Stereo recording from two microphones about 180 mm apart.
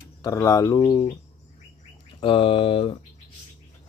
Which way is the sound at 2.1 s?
30° left (ahead or behind).